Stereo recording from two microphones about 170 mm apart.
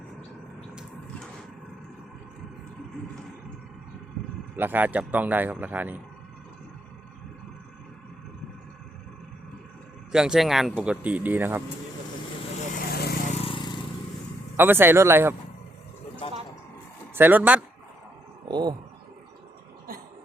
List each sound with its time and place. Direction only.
4.5 s speech: 10° right (ahead or behind)
10.1 s speech: 5° right (ahead or behind)
12.9 s vehicle: 70° left (ahead or behind)
13.3 s vehicle: 35° left (ahead or behind)
14.5 s speech: 15° right (ahead or behind)
17.2 s speech: 10° right (ahead or behind)
18.4 s a sound: 25° right (ahead or behind)